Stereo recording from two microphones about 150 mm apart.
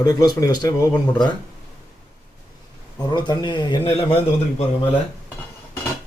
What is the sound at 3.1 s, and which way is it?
Speech, 30° left (ahead or behind).